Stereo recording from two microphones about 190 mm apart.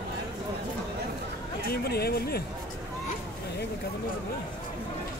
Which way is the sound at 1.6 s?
55° left (ahead or behind).